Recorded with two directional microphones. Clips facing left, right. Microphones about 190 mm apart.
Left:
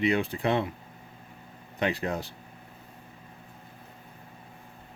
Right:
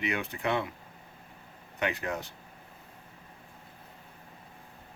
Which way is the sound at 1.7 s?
35° left (ahead or behind).